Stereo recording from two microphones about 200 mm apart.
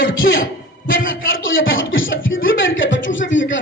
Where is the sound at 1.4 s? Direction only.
80° left.